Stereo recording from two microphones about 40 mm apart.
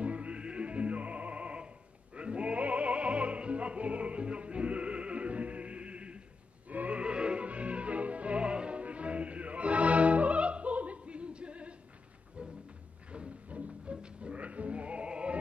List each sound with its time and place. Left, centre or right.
0.0 s music: right
6.7 s music: right
7.0 s music: right